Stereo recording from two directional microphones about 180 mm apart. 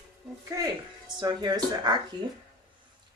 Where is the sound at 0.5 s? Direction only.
20° right (ahead or behind).